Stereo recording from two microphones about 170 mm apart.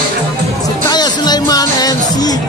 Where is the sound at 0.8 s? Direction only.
25° left (ahead or behind).